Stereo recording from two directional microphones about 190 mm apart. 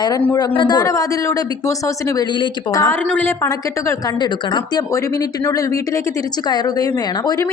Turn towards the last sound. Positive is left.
turn(degrees=20)  # may be behind; listen again after turning